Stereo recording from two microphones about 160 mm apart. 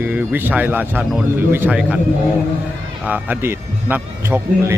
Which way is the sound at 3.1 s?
15° right (ahead or behind).